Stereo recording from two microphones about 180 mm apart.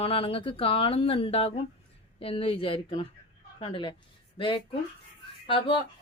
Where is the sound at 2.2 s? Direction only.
30° left (ahead or behind).